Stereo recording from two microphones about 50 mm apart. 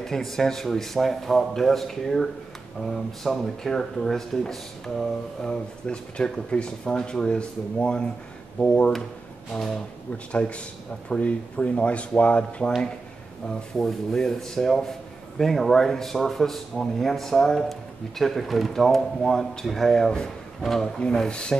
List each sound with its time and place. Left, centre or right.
0.0 s a man's voice: centre; by 8.9 s left
9.5 s a man's voice: centre
10.1 s speech: left
13.8 s a man's voice: centre
21.3 s speech: centre